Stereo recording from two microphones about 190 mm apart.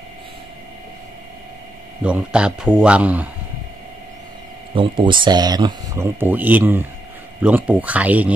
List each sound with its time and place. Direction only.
2.0 s speech: 5° right (ahead or behind)
4.7 s speech: 25° right (ahead or behind); by 8.3 s 10° right (ahead or behind)